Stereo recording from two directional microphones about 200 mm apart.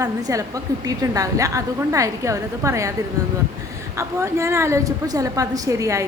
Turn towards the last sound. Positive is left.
turn(degrees=-15)  # may be behind; listen again after turning